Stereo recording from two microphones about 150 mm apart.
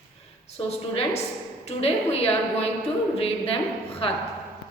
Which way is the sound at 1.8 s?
45° left (ahead or behind).